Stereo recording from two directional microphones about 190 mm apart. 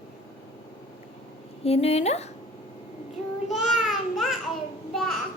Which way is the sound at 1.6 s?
35° left (ahead or behind).